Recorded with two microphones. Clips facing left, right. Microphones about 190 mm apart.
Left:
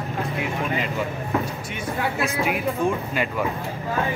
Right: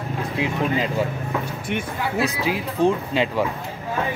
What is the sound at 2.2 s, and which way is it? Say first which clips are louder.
Speech: right 1 dB; 30° right (ahead or behind).